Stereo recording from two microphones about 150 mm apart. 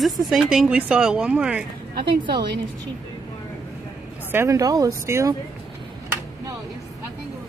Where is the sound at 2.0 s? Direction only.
30° right (ahead or behind).